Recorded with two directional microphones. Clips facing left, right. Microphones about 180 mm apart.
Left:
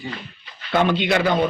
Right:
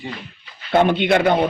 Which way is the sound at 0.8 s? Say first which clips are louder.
Right 2 dB; 50° right (ahead or behind).